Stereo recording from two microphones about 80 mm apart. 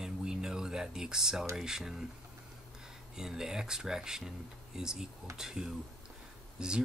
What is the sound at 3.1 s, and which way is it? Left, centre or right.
Speech, centre.